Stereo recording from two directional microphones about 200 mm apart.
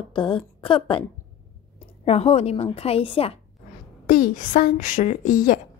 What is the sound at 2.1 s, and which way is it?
A woman's voice, 30° left (ahead or behind).